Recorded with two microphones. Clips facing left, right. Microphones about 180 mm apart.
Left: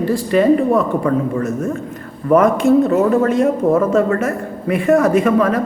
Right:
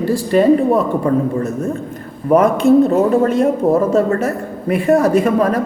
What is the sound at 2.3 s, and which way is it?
Speech, 35° right (ahead or behind).